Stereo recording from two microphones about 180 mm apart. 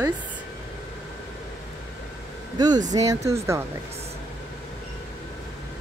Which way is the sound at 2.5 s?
25° right (ahead or behind).